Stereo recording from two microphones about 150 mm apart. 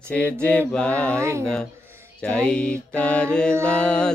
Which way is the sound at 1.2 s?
20° right (ahead or behind).